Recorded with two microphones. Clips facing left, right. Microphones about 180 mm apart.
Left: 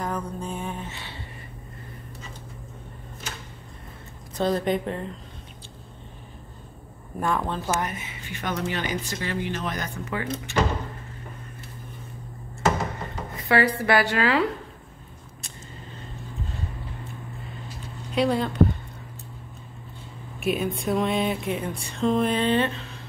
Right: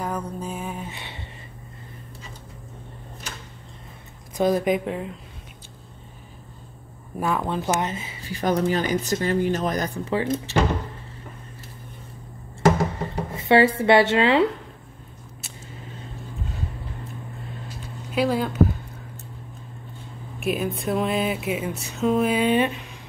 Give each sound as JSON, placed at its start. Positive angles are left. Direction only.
{"t": 0.0, "sound": "music", "side_deg": -10}
{"t": 0.9, "sound": "a sound", "side_deg": -20}
{"t": 4.4, "sound": "a woman's voice", "side_deg": -10}
{"t": 7.2, "sound": "speech", "side_deg": -5}
{"t": 13.1, "sound": "speech", "side_deg": -25}
{"t": 18.1, "sound": "speech", "side_deg": -5}
{"t": 20.3, "sound": "a sound", "side_deg": 0}